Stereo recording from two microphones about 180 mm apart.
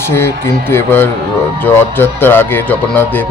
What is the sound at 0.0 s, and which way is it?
A man's voice, 15° left (ahead or behind).